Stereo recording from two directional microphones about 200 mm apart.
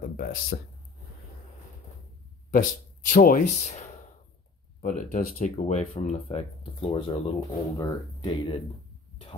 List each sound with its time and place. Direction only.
0.2 s speech: 45° left (ahead or behind)
2.5 s speech: 40° left (ahead or behind)
4.8 s speech: 40° left (ahead or behind); by 8.5 s 20° left (ahead or behind)